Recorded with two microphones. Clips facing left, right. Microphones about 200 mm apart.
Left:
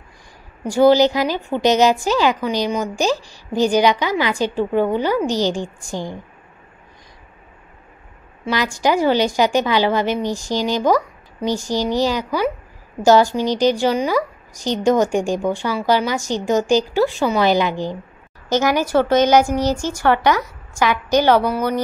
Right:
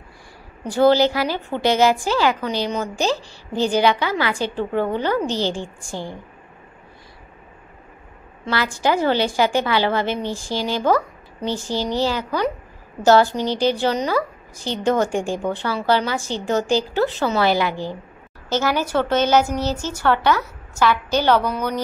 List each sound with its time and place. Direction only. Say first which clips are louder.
0.7 s a woman's voice: left 3 dB; 15° left (ahead or behind)
8.5 s a woman's voice: left 2 dB; 15° left (ahead or behind)